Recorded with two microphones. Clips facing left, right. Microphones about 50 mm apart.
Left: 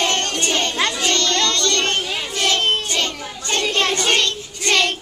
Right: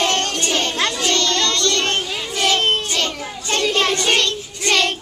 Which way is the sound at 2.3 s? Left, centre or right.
Centre.